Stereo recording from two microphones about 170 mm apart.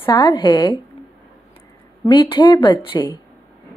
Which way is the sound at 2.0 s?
25° left (ahead or behind).